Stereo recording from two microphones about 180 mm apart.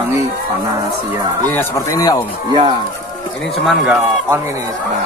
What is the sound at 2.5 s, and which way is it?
Speech, 25° right (ahead or behind).